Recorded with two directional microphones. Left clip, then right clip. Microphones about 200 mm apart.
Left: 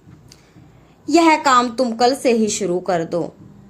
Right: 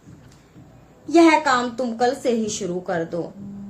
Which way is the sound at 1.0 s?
50° left (ahead or behind).